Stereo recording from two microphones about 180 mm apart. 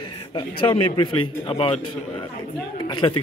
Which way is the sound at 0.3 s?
25° left (ahead or behind).